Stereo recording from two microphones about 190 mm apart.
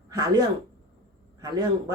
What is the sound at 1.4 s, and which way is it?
Speech, 20° right (ahead or behind).